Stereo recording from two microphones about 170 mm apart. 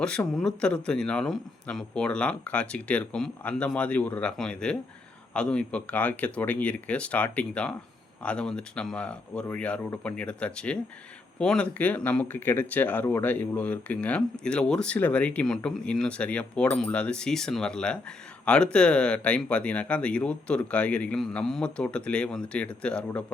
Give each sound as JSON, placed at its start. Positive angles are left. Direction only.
{"t": 0.3, "sound": "speech", "side_deg": 5}